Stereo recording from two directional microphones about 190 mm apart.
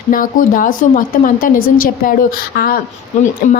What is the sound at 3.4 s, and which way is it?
Speech, 40° left (ahead or behind).